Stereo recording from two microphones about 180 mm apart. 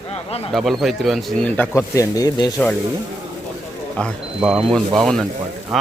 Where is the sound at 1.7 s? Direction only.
20° left (ahead or behind).